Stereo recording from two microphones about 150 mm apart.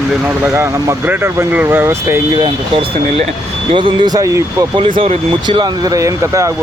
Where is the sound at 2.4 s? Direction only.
35° right (ahead or behind).